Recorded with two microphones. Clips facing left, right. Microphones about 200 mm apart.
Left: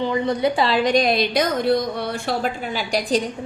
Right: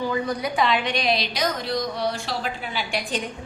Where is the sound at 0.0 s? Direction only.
25° left (ahead or behind).